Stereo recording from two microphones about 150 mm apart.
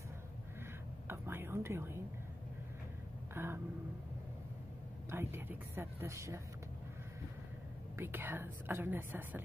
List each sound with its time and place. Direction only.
1.0 s whispering: 15° right (ahead or behind)
3.3 s a woman's voice: 15° right (ahead or behind)
5.1 s a woman's voice: 15° right (ahead or behind)
8.0 s a woman's voice: 15° right (ahead or behind)